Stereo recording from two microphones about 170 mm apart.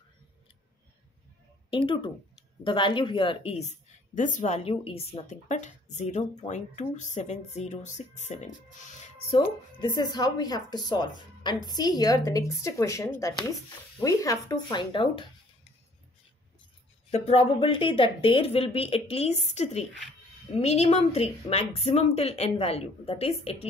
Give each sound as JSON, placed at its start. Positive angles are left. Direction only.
{"t": 1.7, "sound": "a woman's voice", "side_deg": 30}
{"t": 9.3, "sound": "a woman's voice", "side_deg": 30}
{"t": 17.1, "sound": "a woman's voice", "side_deg": 35}